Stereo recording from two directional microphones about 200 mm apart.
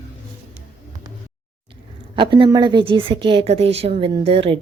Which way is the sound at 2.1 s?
25° right (ahead or behind).